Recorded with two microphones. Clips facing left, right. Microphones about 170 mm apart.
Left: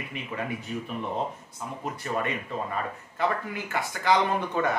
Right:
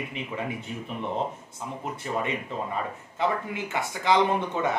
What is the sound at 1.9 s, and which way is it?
Speech, 20° right (ahead or behind).